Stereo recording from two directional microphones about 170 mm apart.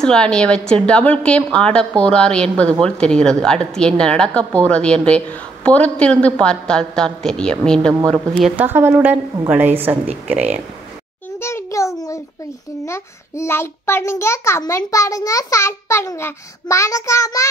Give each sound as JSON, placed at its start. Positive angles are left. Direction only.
{"t": 0.0, "sound": "a woman's voice", "side_deg": 5}
{"t": 11.4, "sound": "a sound", "side_deg": 15}
{"t": 12.8, "sound": "a child's voice", "side_deg": 15}